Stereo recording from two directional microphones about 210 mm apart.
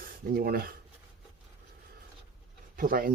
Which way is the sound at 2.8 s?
45° right (ahead or behind).